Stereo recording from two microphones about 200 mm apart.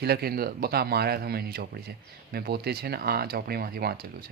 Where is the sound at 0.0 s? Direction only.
50° right (ahead or behind).